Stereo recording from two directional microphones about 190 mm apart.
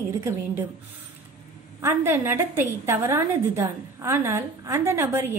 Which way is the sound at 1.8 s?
10° right (ahead or behind).